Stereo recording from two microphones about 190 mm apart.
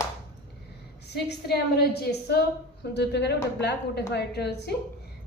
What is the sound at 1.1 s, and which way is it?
A woman's voice, 60° left (ahead or behind).